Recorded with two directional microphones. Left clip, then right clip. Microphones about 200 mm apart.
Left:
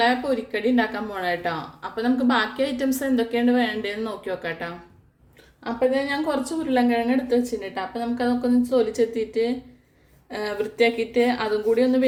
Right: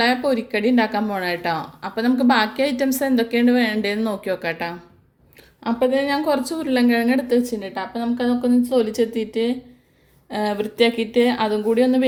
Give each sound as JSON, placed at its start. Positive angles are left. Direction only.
{"t": 0.0, "sound": "speech", "side_deg": -40}